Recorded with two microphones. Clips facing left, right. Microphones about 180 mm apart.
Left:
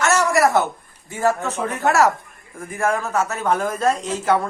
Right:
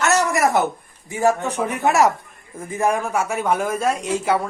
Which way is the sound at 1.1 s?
15° right (ahead or behind).